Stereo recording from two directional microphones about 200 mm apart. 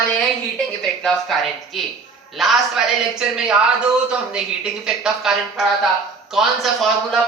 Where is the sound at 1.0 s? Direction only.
Centre (ahead or behind).